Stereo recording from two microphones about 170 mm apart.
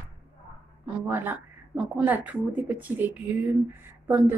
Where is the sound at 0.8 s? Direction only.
10° right (ahead or behind).